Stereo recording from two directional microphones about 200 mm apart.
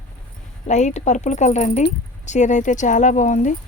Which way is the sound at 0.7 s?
35° left (ahead or behind).